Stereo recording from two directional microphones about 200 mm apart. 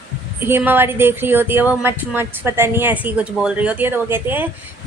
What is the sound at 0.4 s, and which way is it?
Speech, 10° right (ahead or behind).